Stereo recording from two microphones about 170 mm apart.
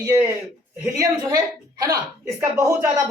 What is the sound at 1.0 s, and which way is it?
A woman's voice, 20° right (ahead or behind).